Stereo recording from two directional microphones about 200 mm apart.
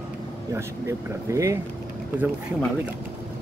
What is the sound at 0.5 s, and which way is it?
Speech, 15° right (ahead or behind).